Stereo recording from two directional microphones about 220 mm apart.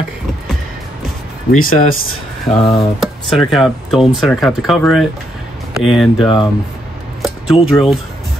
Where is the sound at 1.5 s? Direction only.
40° left (ahead or behind).